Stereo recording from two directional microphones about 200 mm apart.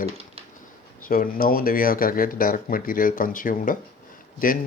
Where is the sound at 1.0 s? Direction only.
45° left (ahead or behind).